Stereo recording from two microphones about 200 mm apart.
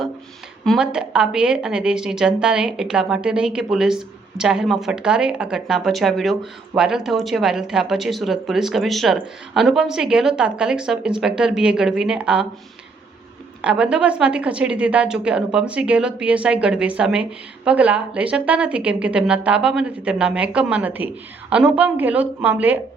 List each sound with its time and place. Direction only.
0.6 s a woman's voice: centre (ahead or behind)
13.6 s a woman's voice: 5° right (ahead or behind)